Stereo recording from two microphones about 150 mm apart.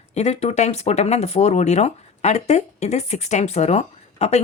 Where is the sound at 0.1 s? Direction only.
45° left (ahead or behind).